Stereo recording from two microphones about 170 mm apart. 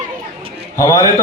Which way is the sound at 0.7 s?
15° left (ahead or behind).